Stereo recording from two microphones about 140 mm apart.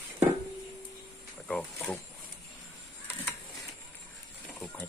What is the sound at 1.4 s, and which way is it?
Speech, 10° left (ahead or behind).